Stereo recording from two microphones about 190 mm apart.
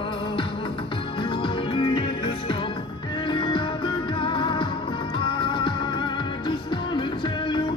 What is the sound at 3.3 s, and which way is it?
Music, 25° left (ahead or behind).